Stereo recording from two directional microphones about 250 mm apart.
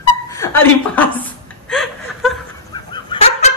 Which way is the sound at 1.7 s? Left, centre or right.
Centre.